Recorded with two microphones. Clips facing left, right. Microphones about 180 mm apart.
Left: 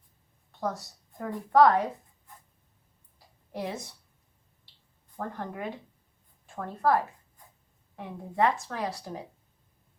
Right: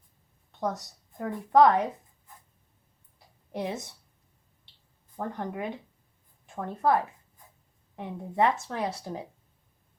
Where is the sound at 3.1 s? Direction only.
20° right (ahead or behind).